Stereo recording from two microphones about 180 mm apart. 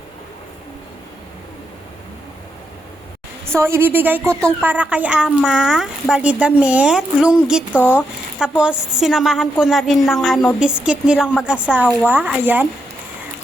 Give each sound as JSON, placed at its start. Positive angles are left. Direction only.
{"t": 3.4, "sound": "a woman's voice", "side_deg": -15}
{"t": 7.8, "sound": "speech", "side_deg": 10}
{"t": 8.4, "sound": "a woman's voice", "side_deg": -5}